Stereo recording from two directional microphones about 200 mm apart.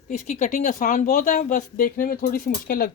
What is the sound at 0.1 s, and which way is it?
Speech, 35° left (ahead or behind).